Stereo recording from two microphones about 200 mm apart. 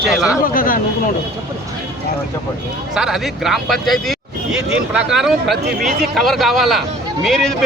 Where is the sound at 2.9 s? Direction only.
Centre (ahead or behind).